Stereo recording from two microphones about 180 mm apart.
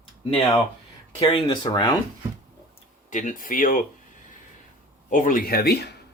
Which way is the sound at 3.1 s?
45° left (ahead or behind).